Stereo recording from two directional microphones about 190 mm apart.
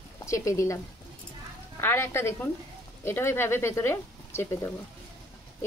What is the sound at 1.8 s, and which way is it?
Speech, 10° left (ahead or behind).